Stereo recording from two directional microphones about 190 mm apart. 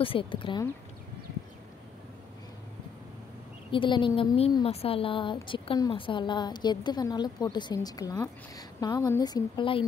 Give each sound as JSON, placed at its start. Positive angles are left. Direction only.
{"t": 0.0, "sound": "a woman's voice", "side_deg": 30}
{"t": 3.7, "sound": "a woman's voice", "side_deg": 25}